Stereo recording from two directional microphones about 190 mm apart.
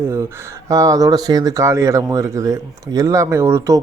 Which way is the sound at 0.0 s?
15° right (ahead or behind).